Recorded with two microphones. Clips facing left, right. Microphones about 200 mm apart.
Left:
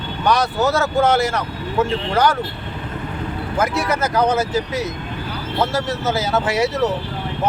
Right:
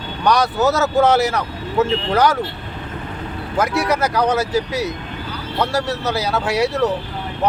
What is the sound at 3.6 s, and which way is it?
Speech, centre (ahead or behind).